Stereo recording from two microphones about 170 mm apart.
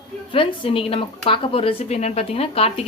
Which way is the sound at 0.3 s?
30° left (ahead or behind).